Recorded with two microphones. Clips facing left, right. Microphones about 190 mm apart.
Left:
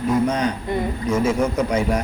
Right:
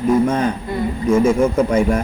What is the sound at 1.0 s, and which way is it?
Speech, 50° right (ahead or behind).